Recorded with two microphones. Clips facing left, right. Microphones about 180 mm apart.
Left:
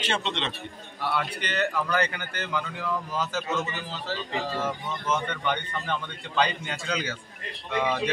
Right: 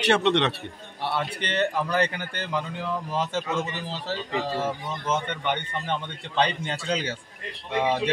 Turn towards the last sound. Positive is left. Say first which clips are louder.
# right 2 dB
turn(degrees=-30)  # may be behind; listen again after turning